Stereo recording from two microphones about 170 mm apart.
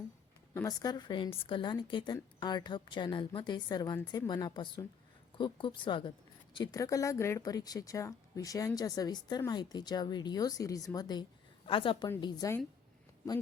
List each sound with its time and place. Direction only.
0.5 s speech: 20° left (ahead or behind)